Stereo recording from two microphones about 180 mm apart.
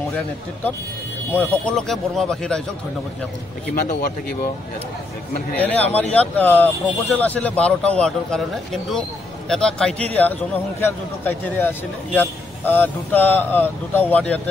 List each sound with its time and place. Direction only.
1.3 s speech: 5° left (ahead or behind)
3.7 s speech: 55° left (ahead or behind)
5.6 s a man's voice: 10° left (ahead or behind)
9.5 s a man's voice: 5° left (ahead or behind)